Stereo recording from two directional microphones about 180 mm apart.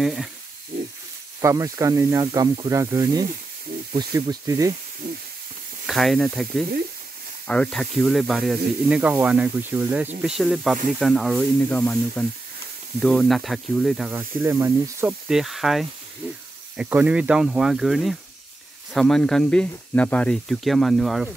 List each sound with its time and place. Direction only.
0.0 s speech: 5° right (ahead or behind)
1.4 s speech: 15° right (ahead or behind)
5.0 s a sound: 50° right (ahead or behind)
5.9 s speech: centre (ahead or behind)
14.1 s speech: 15° right (ahead or behind)
15.2 s speech: centre (ahead or behind)